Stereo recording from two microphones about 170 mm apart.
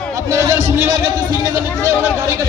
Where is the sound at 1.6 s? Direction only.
15° left (ahead or behind).